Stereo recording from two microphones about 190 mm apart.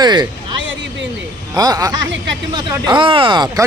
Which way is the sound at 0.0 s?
25° right (ahead or behind).